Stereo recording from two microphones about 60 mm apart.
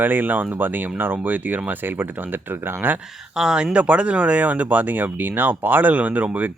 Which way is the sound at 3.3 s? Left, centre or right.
Centre.